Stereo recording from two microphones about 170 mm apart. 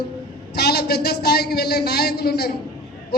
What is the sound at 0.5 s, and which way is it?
A man's voice, 75° left (ahead or behind).